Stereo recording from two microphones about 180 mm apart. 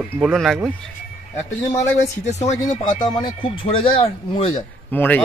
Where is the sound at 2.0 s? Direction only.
40° left (ahead or behind).